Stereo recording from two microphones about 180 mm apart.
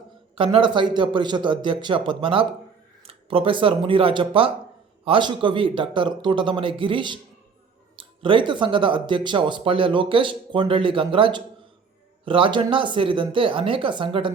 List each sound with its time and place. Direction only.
0.3 s speech: 30° right (ahead or behind)